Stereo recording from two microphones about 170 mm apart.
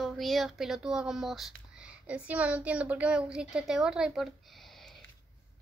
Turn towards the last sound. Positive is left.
turn(degrees=0)  # may be behind; listen again after turning